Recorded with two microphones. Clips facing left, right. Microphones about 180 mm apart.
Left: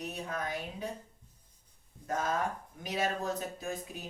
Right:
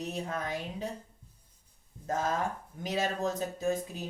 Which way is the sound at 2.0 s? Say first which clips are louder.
Right 1 dB; 25° right (ahead or behind).